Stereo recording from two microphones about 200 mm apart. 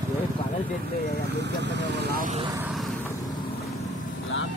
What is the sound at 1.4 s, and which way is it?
Speech, 60° right (ahead or behind).